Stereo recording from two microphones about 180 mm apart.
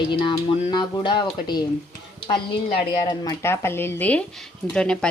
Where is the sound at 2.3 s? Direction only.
30° left (ahead or behind).